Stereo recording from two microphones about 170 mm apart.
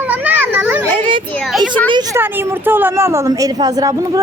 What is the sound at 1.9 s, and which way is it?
Speech, 25° right (ahead or behind).